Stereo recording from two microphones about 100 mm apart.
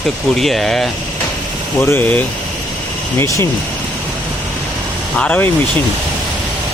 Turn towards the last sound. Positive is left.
turn(degrees=15)  # may be behind; listen again after turning